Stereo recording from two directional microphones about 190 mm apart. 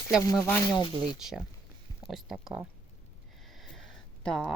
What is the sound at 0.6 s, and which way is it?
Speech, 20° left (ahead or behind).